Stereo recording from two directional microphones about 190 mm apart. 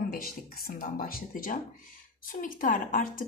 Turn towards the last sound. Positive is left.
turn(degrees=45)  # may be behind; listen again after turning